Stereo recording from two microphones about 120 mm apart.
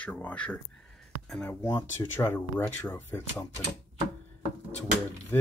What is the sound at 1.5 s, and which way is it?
Speech, 25° left (ahead or behind).